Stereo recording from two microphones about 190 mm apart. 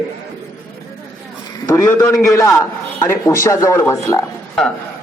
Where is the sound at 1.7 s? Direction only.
15° left (ahead or behind).